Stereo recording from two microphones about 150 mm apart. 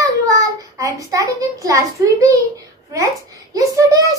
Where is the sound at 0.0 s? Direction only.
20° right (ahead or behind).